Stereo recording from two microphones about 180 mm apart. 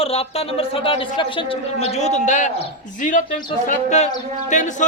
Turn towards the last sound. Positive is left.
turn(degrees=45)  # may be behind; listen again after turning